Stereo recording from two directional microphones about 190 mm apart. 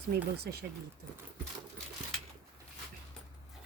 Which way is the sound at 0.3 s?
60° right (ahead or behind).